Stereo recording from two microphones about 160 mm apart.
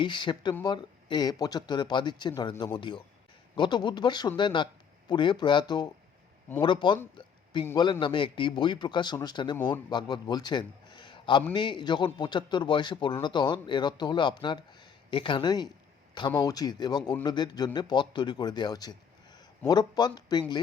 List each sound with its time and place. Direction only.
0.0 s a man's voice: 30° left (ahead or behind)